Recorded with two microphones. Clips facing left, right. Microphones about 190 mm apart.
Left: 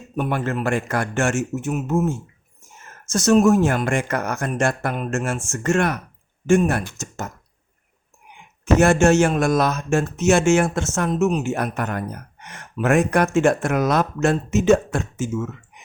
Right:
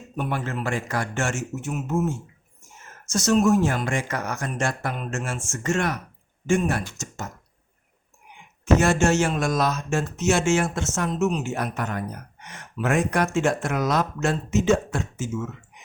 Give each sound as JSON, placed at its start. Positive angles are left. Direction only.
{"t": 0.2, "sound": "speech", "side_deg": 55}
{"t": 3.1, "sound": "speech", "side_deg": 55}
{"t": 8.8, "sound": "speech", "side_deg": 55}